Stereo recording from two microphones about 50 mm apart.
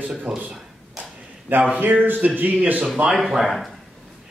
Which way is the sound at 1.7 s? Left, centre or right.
Right.